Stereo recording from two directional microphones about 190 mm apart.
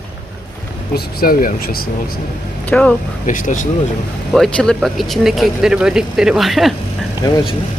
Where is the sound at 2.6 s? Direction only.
5° left (ahead or behind).